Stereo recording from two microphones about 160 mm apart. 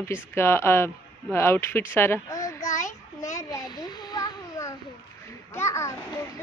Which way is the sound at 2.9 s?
20° left (ahead or behind).